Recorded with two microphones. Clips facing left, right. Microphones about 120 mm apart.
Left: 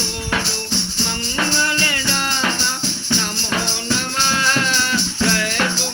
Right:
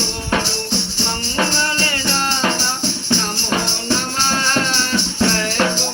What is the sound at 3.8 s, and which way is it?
Music, 35° right (ahead or behind).